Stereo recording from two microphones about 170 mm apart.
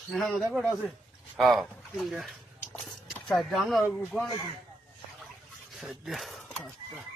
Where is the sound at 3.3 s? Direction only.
Centre (ahead or behind).